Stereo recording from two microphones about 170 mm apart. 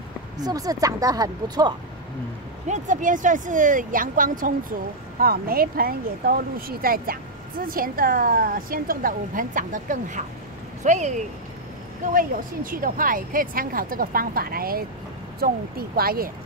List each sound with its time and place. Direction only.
0.4 s speech: 20° right (ahead or behind)
2.7 s speech: 50° right (ahead or behind)
12.1 s speech: 55° right (ahead or behind)